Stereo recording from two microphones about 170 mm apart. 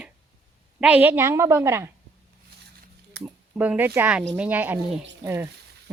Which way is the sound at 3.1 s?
90° right.